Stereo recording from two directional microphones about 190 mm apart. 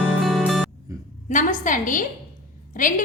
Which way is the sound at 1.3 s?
40° left (ahead or behind).